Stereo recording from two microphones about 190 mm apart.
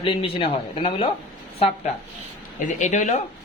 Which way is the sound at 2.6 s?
40° left (ahead or behind).